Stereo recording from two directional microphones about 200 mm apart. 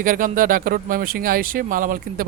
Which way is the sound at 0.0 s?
45° right (ahead or behind).